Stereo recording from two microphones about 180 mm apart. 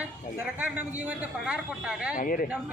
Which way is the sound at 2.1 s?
50° left (ahead or behind).